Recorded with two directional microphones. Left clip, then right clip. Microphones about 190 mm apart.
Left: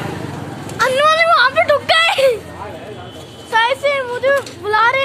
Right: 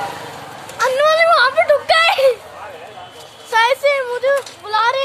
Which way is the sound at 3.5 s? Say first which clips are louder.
Right 1 dB; 5° right (ahead or behind).